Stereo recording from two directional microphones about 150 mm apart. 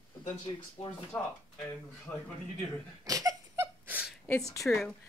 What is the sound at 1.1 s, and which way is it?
Speech, 15° left (ahead or behind).